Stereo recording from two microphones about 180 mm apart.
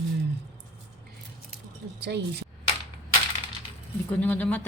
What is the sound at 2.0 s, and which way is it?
Speech, 70° right (ahead or behind).